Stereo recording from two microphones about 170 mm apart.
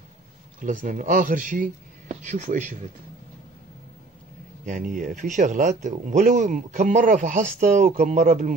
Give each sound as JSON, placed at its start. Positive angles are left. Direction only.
{"t": 0.6, "sound": "speech", "side_deg": -50}
{"t": 4.6, "sound": "speech", "side_deg": -50}